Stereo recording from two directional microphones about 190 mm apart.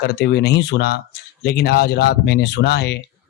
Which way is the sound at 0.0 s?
60° left (ahead or behind).